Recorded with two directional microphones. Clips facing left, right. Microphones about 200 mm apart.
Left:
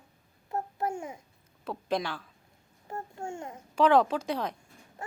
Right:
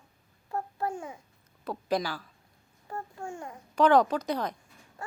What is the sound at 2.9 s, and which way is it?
Speech, 25° left (ahead or behind).